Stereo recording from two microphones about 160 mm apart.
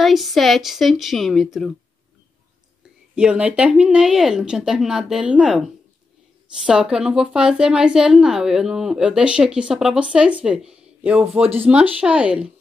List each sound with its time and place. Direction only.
0.0 s a woman's voice: centre (ahead or behind)
3.2 s a woman's voice: 5° right (ahead or behind)